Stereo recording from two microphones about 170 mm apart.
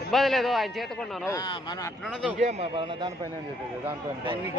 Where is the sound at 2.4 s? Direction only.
40° right (ahead or behind).